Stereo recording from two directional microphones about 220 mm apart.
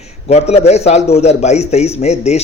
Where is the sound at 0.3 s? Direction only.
30° left (ahead or behind).